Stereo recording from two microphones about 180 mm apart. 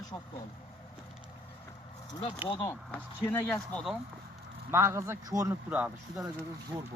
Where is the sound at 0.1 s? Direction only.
20° left (ahead or behind).